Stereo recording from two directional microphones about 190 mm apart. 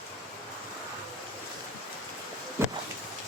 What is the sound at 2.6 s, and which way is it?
Vehicle, 15° right (ahead or behind).